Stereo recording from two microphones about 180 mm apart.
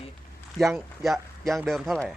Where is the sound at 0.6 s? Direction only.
Centre (ahead or behind).